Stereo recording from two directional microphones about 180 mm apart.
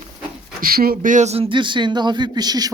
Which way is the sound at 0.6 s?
55° right (ahead or behind).